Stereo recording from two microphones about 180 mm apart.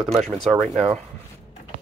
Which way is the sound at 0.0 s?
5° left (ahead or behind).